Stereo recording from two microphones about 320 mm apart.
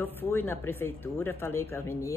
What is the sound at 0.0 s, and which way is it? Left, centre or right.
Speech, centre.